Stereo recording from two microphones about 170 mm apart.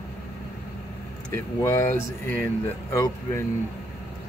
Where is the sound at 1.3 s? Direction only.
15° left (ahead or behind).